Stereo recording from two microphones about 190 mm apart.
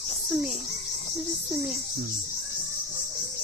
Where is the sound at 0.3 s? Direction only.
Centre (ahead or behind).